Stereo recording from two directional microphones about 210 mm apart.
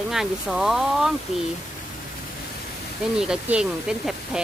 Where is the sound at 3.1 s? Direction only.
5° right (ahead or behind).